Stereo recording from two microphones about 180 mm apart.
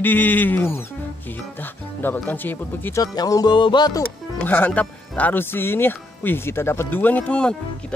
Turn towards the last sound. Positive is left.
turn(degrees=5)  # may be behind; listen again after turning